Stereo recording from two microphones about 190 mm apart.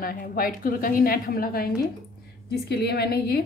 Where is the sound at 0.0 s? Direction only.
50° left (ahead or behind).